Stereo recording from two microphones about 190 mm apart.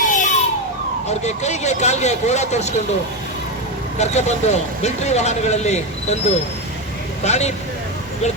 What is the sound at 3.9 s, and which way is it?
Speech, 35° left (ahead or behind).